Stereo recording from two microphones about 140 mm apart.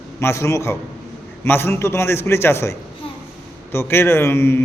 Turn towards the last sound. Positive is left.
turn(degrees=15)  # may be behind; listen again after turning